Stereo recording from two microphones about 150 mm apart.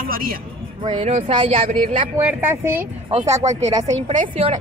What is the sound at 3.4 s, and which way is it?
A woman's voice, 50° right (ahead or behind).